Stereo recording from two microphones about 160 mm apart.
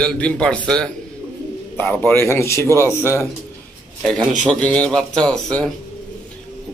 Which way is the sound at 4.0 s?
Centre (ahead or behind).